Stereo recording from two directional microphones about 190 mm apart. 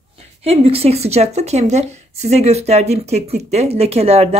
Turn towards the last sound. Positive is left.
turn(degrees=-35)  # may be behind; listen again after turning